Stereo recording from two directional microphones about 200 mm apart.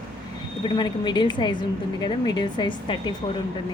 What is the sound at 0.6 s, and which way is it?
A woman's voice, 25° left (ahead or behind).